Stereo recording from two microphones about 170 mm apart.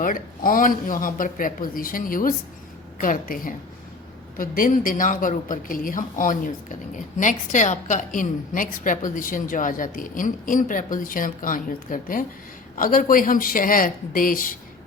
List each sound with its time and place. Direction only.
0.0 s a woman's voice: 55° left (ahead or behind)